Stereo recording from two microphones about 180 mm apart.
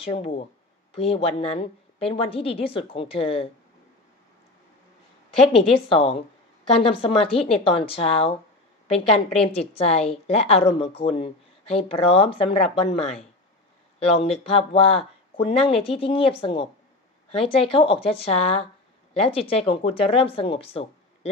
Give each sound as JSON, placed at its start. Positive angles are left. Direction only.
{"t": 0.0, "sound": "speech", "side_deg": 30}
{"t": 5.5, "sound": "speech", "side_deg": 30}